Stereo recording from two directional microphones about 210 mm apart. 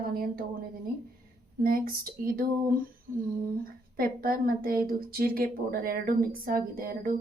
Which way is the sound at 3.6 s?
45° right (ahead or behind).